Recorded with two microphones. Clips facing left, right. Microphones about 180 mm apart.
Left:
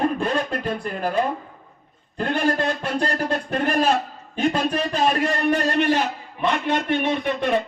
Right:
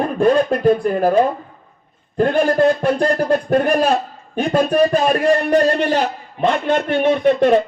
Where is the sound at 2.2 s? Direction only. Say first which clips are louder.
Right 8 dB; 50° right (ahead or behind).